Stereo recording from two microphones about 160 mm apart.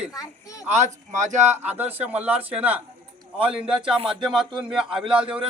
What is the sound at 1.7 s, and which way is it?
A man's voice, 10° right (ahead or behind).